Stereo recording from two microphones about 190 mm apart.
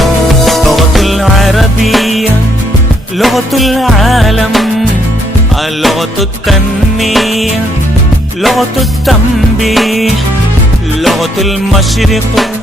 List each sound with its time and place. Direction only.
0.0 s music: centre (ahead or behind)
5.8 s music: centre (ahead or behind)